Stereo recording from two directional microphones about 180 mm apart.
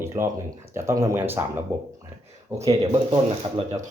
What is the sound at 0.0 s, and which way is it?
Speech, 15° right (ahead or behind).